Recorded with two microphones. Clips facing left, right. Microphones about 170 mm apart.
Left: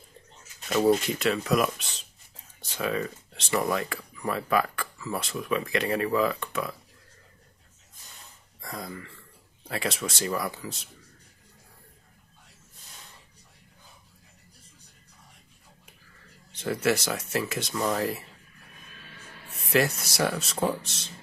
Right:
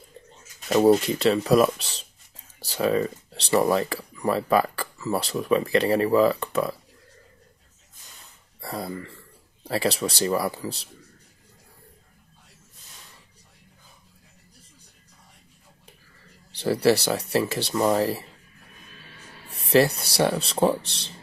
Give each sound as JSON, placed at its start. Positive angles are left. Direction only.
{"t": 0.7, "sound": "speech", "side_deg": -30}
{"t": 8.5, "sound": "speech", "side_deg": -35}
{"t": 16.5, "sound": "speech", "side_deg": -35}
{"t": 19.5, "sound": "speech", "side_deg": -30}